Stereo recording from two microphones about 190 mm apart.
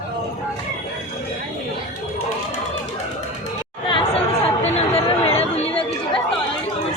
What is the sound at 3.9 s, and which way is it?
Chatter, 30° left (ahead or behind).